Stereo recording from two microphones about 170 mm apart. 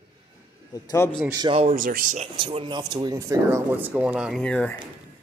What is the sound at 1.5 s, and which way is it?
Speech, 35° right (ahead or behind).